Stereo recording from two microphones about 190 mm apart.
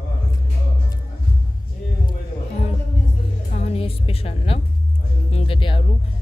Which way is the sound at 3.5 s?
35° left (ahead or behind).